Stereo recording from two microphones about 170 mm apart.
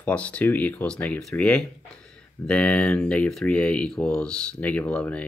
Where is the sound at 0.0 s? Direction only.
5° left (ahead or behind).